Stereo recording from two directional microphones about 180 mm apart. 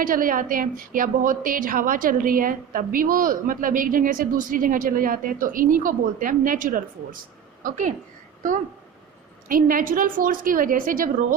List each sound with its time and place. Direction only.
0.0 s a woman's voice: 50° right (ahead or behind)
9.5 s a woman's voice: 50° right (ahead or behind)